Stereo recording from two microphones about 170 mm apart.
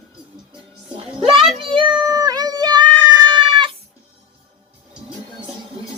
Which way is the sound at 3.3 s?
30° right (ahead or behind).